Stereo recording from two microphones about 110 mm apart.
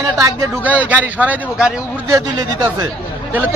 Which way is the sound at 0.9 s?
15° right (ahead or behind).